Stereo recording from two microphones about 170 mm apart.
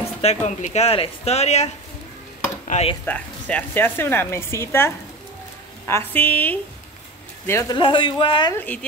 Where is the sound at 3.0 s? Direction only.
10° left (ahead or behind).